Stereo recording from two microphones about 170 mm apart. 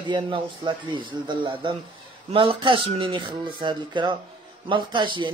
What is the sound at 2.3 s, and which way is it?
Speech, 30° right (ahead or behind).